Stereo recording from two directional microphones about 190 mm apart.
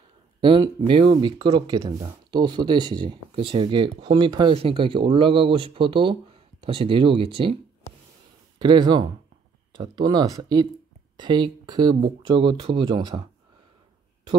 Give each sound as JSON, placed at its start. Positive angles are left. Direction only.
{"t": 0.4, "sound": "speech", "side_deg": -25}
{"t": 8.5, "sound": "speech", "side_deg": -25}